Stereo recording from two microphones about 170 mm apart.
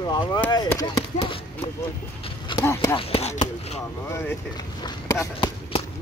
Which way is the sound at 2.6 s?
15° left (ahead or behind).